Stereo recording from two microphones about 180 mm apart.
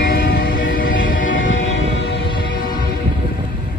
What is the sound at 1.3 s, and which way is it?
Train, 90° left.